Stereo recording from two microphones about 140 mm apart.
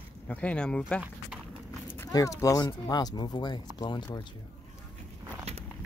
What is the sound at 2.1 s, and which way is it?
Speech, 25° left (ahead or behind).